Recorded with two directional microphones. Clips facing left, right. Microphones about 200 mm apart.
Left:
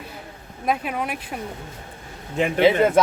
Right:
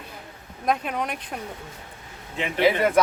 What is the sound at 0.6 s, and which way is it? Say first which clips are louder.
Speech: left 1 dB; 5° left (ahead or behind).